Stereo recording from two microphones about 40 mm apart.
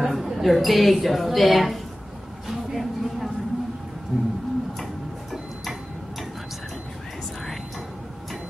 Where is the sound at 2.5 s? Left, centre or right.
Centre.